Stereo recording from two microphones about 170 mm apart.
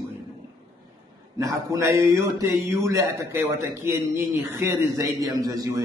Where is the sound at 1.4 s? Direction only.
20° right (ahead or behind).